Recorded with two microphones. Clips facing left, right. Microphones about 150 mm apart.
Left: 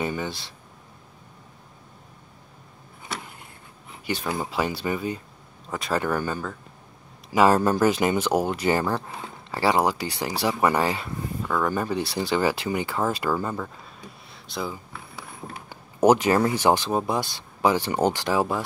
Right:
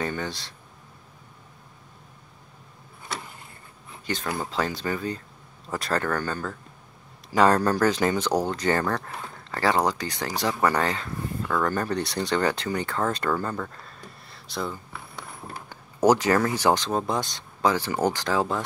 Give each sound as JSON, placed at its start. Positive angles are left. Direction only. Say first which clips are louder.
{"t": 0.0, "sound": "speech", "louder": "left 1 dB", "side_deg": 10}
{"t": 4.0, "sound": "speech", "louder": "left 2 dB", "side_deg": 10}
{"t": 5.7, "sound": "speech", "louder": "left 1 dB", "side_deg": 0}
{"t": 15.7, "sound": "a sound", "louder": "left 2 dB", "side_deg": 15}
{"t": 16.6, "sound": "speech", "louder": "left 1 dB", "side_deg": 10}
{"t": 17.9, "sound": "speech", "louder": "left 2 dB", "side_deg": 25}
{"t": 18.2, "sound": "speech", "louder": "left 1 dB", "side_deg": 15}